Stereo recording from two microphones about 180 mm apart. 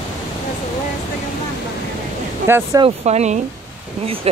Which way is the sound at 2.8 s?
35° right (ahead or behind).